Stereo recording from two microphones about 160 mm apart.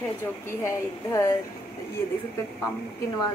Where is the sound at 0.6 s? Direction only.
20° left (ahead or behind).